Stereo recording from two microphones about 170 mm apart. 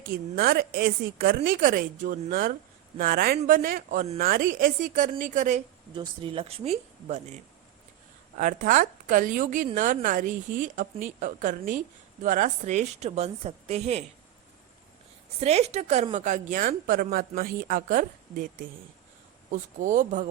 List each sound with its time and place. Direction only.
0.0 s speech: 65° right (ahead or behind)
1.5 s a woman's voice: 55° right (ahead or behind)
5.9 s a woman's voice: 30° right (ahead or behind)
15.4 s a woman's voice: 40° right (ahead or behind)